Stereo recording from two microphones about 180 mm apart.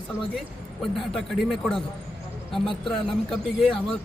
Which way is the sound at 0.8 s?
Centre (ahead or behind).